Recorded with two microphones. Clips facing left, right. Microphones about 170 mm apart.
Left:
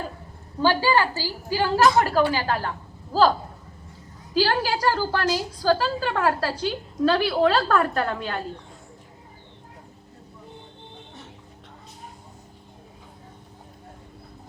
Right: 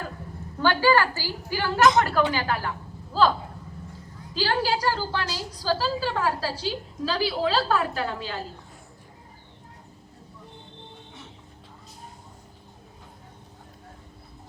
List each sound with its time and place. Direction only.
0.8 s a woman's voice: 15° left (ahead or behind)
1.7 s a woman's voice: 35° left (ahead or behind)
4.4 s a woman's voice: 45° left (ahead or behind); by 8.4 s 60° left (ahead or behind)